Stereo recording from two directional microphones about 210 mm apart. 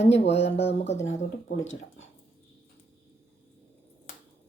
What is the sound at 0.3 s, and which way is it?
Speech, 55° left (ahead or behind).